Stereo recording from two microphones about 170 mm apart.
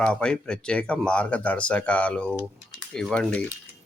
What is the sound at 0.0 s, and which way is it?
Speech, 5° left (ahead or behind).